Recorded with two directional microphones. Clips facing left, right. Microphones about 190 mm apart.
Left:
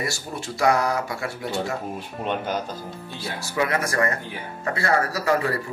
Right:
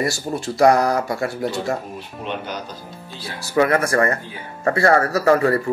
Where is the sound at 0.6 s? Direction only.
40° right (ahead or behind).